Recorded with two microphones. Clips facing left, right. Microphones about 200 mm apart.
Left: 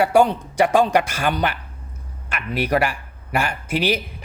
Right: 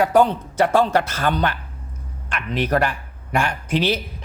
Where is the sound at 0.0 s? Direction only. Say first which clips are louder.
Even; 10° left (ahead or behind).